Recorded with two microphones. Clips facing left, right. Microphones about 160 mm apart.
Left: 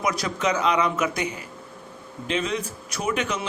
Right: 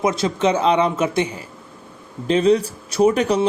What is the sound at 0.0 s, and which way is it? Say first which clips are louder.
A man's voice: right 6 dB; 25° right (ahead or behind).